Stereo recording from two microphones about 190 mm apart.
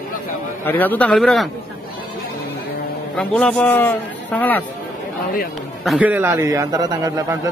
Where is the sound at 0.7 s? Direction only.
10° left (ahead or behind).